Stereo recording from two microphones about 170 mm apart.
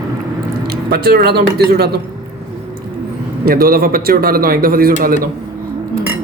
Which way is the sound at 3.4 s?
60° right (ahead or behind).